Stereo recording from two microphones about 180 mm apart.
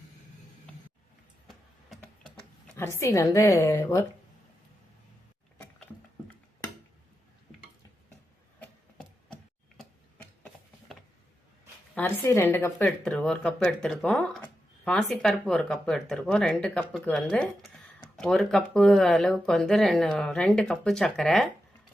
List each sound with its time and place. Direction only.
3.0 s a woman's voice: 15° left (ahead or behind)
10.2 s a sound: 5° left (ahead or behind)
11.9 s a woman's voice: 10° left (ahead or behind)